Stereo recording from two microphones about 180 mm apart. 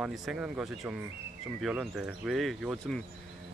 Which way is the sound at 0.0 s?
Centre (ahead or behind).